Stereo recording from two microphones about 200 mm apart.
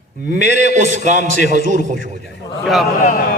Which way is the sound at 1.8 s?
40° right (ahead or behind).